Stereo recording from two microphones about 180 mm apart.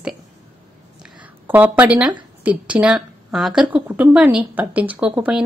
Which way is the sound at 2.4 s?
5° right (ahead or behind).